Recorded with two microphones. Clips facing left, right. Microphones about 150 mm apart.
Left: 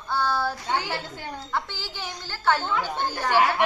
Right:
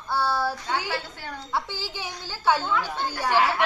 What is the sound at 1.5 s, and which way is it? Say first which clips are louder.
A woman's voice: right 2 dB; 10° right (ahead or behind).